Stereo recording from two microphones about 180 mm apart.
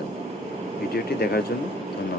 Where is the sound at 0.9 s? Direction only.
60° left (ahead or behind).